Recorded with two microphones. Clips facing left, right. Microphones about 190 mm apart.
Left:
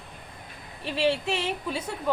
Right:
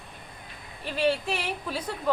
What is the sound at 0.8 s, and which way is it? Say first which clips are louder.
A woman's voice: even; 25° left (ahead or behind).